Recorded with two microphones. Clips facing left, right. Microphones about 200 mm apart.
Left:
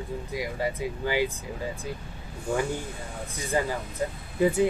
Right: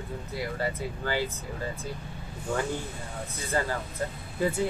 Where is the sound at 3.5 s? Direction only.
15° left (ahead or behind).